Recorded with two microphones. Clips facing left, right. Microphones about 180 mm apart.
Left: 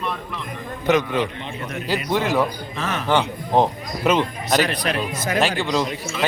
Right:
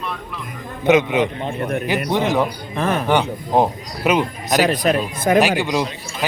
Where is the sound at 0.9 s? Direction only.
20° right (ahead or behind).